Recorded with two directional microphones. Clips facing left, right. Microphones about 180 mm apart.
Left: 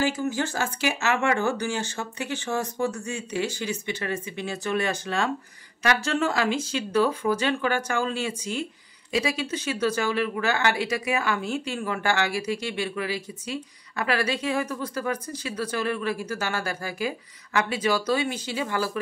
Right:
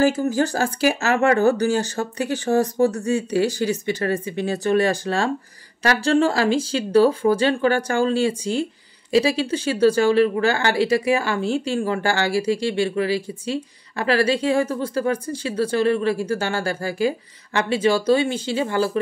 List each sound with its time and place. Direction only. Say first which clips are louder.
0.0 s speech: right 7 dB; 40° right (ahead or behind)